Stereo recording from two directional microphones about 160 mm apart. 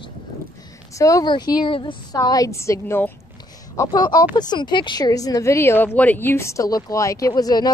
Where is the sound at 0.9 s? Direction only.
20° left (ahead or behind).